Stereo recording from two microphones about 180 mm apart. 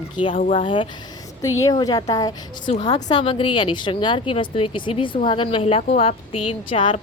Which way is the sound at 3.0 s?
25° left (ahead or behind).